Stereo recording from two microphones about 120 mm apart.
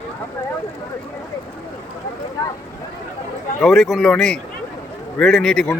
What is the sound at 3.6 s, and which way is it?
Speech, 5° left (ahead or behind).